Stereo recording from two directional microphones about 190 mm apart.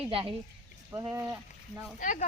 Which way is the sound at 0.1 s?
30° right (ahead or behind).